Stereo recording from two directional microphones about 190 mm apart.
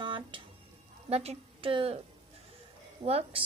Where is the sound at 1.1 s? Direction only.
35° right (ahead or behind).